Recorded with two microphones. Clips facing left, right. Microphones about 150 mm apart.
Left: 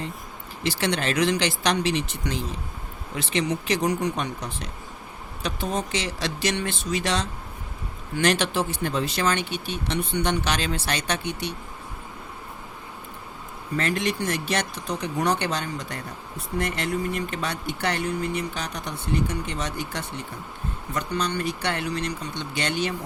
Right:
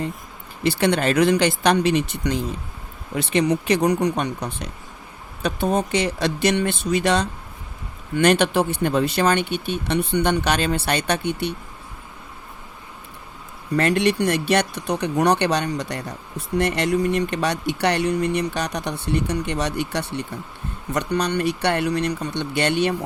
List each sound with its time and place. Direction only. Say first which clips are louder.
0.6 s speech: right 6 dB; 55° right (ahead or behind)
13.7 s speech: right 7 dB; 70° right (ahead or behind)